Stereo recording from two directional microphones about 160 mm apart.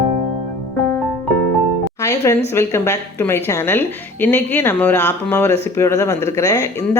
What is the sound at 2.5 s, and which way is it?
A woman's voice, 15° left (ahead or behind).